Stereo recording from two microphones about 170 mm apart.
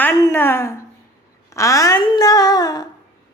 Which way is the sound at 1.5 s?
20° left (ahead or behind).